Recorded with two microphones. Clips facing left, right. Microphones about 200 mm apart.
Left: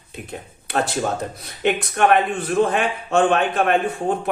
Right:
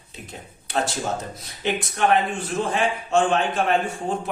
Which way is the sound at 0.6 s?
60° left (ahead or behind).